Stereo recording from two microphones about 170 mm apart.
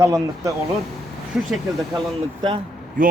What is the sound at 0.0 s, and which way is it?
Speech, 20° right (ahead or behind).